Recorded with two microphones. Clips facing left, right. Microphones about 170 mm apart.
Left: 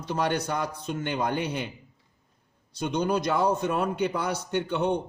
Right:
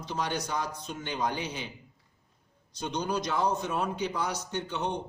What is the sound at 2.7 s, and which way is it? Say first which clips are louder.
A man's voice: left 5 dB; 55° left (ahead or behind).